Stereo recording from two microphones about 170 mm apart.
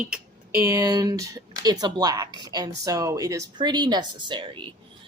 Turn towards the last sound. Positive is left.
turn(degrees=-25)  # may be behind; listen again after turning